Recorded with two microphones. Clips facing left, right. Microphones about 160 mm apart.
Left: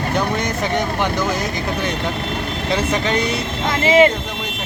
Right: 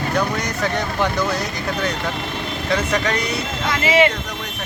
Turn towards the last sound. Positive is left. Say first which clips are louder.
# left 4 dB
turn(degrees=45)  # may be behind; listen again after turning